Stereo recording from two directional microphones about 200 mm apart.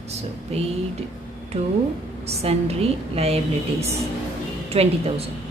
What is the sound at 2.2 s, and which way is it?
A woman's voice, 30° right (ahead or behind).